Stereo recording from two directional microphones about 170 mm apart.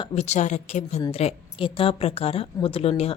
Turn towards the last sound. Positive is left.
turn(degrees=35)  # may be behind; listen again after turning